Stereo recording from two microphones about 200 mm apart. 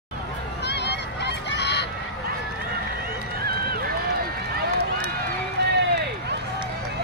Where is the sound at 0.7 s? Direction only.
60° left (ahead or behind).